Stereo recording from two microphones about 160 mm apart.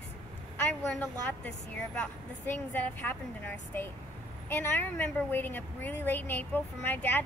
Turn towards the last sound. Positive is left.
turn(degrees=10)  # may be behind; listen again after turning